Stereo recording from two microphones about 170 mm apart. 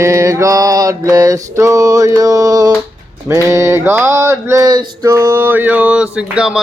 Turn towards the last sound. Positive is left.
turn(degrees=-5)  # may be behind; listen again after turning